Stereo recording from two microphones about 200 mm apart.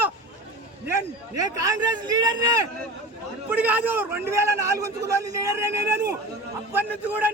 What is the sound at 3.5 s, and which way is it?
A man's voice, 10° right (ahead or behind).